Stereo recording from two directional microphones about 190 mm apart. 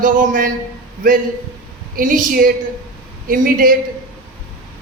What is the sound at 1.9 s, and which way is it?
A woman's voice, 45° right (ahead or behind).